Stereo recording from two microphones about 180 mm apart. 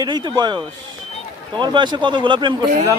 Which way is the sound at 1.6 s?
25° right (ahead or behind).